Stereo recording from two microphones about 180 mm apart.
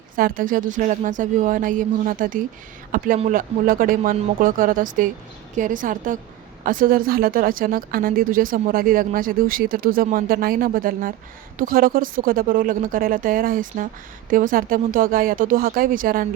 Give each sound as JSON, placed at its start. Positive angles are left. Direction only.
{"t": 0.2, "sound": "speech", "side_deg": -50}